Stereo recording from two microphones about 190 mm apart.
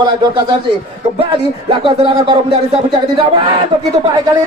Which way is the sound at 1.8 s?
25° right (ahead or behind).